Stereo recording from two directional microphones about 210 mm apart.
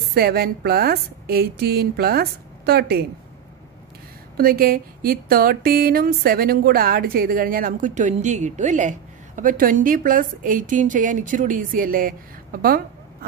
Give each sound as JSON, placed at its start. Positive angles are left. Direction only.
{"t": 0.1, "sound": "a woman's voice", "side_deg": -45}
{"t": 4.4, "sound": "a woman's voice", "side_deg": -45}